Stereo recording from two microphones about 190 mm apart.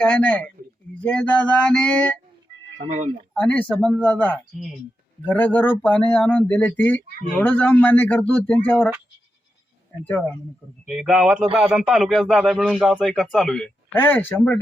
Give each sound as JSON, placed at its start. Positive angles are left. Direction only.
{"t": 0.0, "sound": "speech", "side_deg": 5}
{"t": 2.7, "sound": "speech", "side_deg": -40}
{"t": 3.3, "sound": "speech", "side_deg": 5}
{"t": 10.0, "sound": "speech", "side_deg": 10}
{"t": 10.8, "sound": "speech", "side_deg": 0}